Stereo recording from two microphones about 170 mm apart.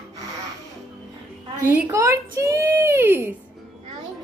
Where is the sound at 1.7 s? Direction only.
15° right (ahead or behind).